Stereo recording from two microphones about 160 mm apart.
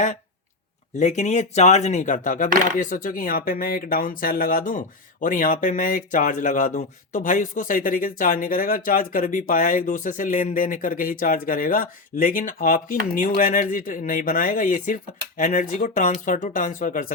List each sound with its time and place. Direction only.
0.9 s speech: 45° left (ahead or behind)